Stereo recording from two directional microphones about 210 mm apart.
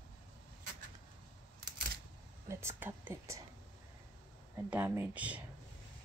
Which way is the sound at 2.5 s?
10° right (ahead or behind).